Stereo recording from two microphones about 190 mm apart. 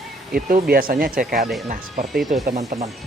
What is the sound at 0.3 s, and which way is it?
Speech, 50° right (ahead or behind).